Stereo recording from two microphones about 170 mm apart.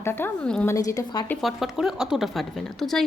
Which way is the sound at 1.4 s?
Centre (ahead or behind).